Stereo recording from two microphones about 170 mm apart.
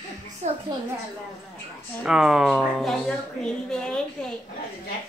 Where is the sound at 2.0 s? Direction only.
5° right (ahead or behind).